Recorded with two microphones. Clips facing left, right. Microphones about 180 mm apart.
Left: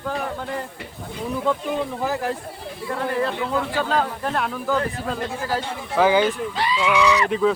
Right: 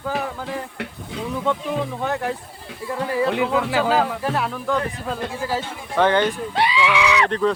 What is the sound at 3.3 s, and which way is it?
Speech, 90° right.